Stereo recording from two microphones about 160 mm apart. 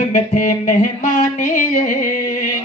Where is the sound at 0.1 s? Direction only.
50° left (ahead or behind).